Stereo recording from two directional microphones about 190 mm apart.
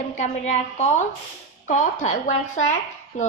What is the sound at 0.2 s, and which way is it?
A woman's voice, 35° left (ahead or behind).